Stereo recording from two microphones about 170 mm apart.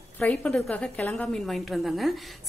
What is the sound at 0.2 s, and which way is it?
Speech, 5° left (ahead or behind).